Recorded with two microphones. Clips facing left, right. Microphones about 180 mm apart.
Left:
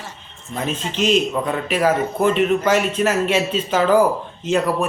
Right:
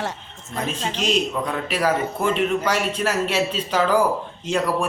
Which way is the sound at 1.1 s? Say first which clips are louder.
Left 4 dB; 5° left (ahead or behind).